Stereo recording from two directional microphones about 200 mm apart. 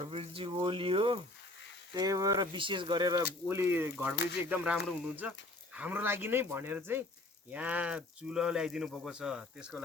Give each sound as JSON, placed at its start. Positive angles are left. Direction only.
{"t": 0.0, "sound": "speech", "side_deg": -30}
{"t": 4.1, "sound": "speech", "side_deg": 55}
{"t": 4.4, "sound": "speech", "side_deg": -10}